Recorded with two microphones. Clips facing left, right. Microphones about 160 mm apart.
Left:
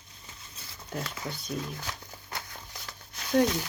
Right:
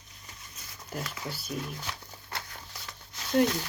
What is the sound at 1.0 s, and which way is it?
Speech, 30° left (ahead or behind).